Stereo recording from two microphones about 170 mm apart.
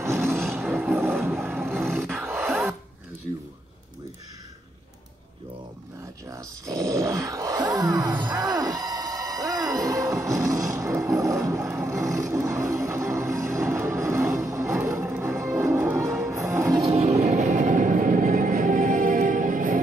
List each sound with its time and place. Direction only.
0.0 s music: 15° right (ahead or behind)
0.7 s a sound: 15° right (ahead or behind)
1.7 s roar: 15° right (ahead or behind)
6.3 s groan: 20° right (ahead or behind)
16.8 s train: 40° right (ahead or behind)